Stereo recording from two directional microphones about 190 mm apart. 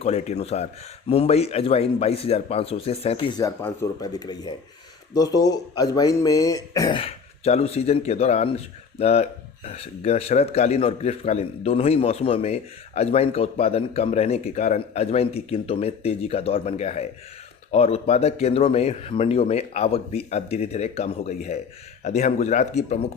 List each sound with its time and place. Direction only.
0.0 s speech: 35° left (ahead or behind)